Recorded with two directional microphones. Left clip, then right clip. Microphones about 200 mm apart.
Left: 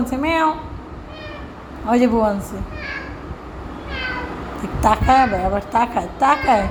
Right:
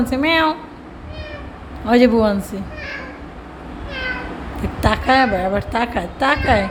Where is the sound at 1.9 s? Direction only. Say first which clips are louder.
Right 3 dB; 20° right (ahead or behind).